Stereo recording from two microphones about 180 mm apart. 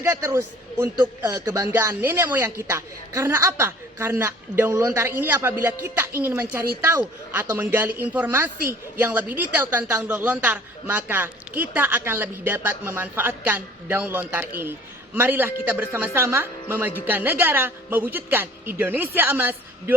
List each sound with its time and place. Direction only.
0.0 s a man's voice: 15° right (ahead or behind)